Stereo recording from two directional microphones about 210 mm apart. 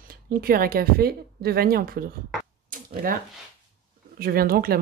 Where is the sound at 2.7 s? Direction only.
40° right (ahead or behind).